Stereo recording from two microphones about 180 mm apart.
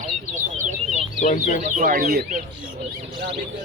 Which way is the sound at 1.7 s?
45° right (ahead or behind).